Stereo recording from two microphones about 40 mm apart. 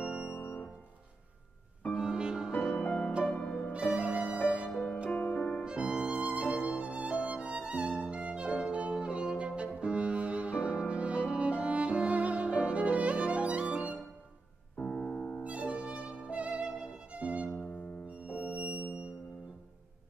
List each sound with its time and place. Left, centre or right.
0.3 s keyboard: left
2.0 s music: centre
2.7 s music: left
3.7 s music: right
4.6 s music: left
5.1 s music: left
5.7 s music: right
7.3 s violin: right
9.6 s music: right
14.8 s piano: left
15.0 s music: left
15.4 s music: right